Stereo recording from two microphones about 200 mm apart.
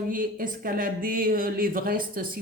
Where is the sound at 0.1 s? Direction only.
45° right (ahead or behind).